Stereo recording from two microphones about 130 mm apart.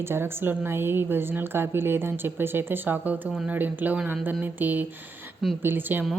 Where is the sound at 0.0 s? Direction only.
20° right (ahead or behind).